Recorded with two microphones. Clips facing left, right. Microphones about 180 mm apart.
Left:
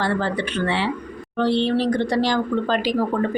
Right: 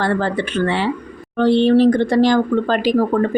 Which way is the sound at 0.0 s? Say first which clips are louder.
Right 4 dB; 50° right (ahead or behind).